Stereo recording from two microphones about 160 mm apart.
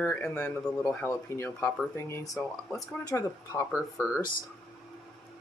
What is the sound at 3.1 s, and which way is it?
Speech, 20° left (ahead or behind).